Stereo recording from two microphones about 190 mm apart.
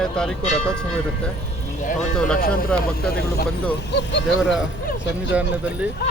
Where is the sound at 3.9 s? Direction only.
70° left (ahead or behind).